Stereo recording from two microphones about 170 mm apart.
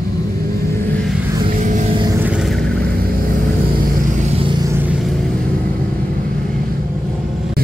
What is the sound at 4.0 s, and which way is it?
Vehicle, 40° right (ahead or behind).